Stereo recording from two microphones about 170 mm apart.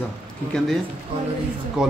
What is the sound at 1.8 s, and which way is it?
Speech, 5° right (ahead or behind).